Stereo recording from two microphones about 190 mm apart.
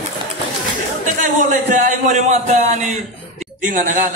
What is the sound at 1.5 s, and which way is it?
Speech, 40° right (ahead or behind).